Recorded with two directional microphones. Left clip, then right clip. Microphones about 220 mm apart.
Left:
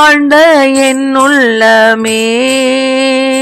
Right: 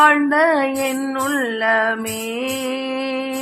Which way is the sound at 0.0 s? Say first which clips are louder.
Left 9 dB; 35° left (ahead or behind).